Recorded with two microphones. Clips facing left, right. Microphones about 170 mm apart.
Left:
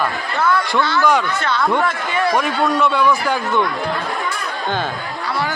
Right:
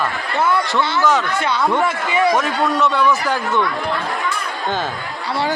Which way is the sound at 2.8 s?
10° left (ahead or behind).